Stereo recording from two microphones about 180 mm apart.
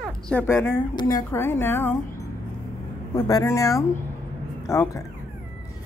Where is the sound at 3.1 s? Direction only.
15° left (ahead or behind).